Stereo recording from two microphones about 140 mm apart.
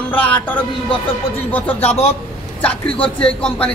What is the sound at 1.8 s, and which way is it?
Speech, 50° left (ahead or behind).